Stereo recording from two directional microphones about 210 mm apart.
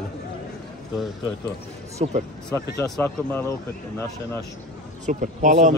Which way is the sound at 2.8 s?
5° left (ahead or behind).